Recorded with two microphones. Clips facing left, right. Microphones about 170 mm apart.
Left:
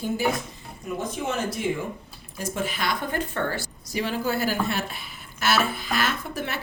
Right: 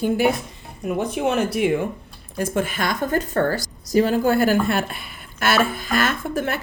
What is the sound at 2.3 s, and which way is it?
A woman's voice, 55° right (ahead or behind).